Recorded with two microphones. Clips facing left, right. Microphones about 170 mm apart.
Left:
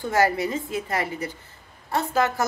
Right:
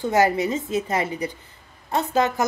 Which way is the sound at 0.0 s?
20° right (ahead or behind).